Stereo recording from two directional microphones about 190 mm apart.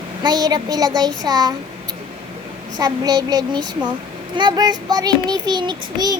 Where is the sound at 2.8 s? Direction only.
20° right (ahead or behind).